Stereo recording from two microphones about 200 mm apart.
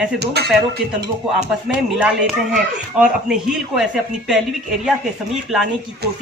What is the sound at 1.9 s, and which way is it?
Speech, 5° right (ahead or behind).